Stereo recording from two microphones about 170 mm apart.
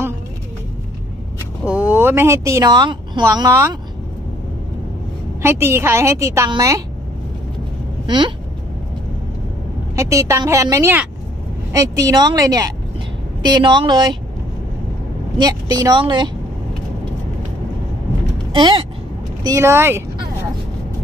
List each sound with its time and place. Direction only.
1.7 s speech: 10° right (ahead or behind)
5.4 s a woman's voice: 15° right (ahead or behind)
9.9 s a woman's voice: 20° right (ahead or behind)
15.3 s a woman's voice: 25° right (ahead or behind)
18.5 s speech: 30° right (ahead or behind)
19.4 s a woman's voice: 15° right (ahead or behind)